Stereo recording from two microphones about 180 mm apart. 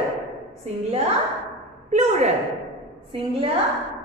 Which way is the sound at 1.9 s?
40° right (ahead or behind).